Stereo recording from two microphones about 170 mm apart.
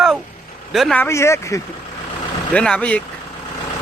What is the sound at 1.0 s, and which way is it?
Speech, 15° left (ahead or behind).